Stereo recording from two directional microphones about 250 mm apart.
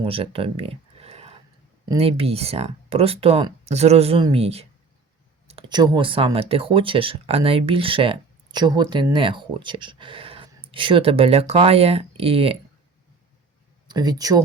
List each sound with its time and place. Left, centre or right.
0.0 s a sound: right
1.9 s speech: right
13.8 s speech: centre